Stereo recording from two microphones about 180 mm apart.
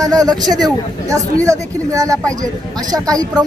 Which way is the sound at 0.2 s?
20° right (ahead or behind).